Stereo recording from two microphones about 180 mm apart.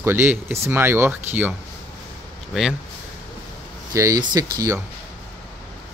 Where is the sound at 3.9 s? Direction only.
20° right (ahead or behind).